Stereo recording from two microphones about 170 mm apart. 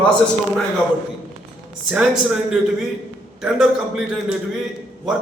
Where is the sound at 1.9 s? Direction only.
5° right (ahead or behind).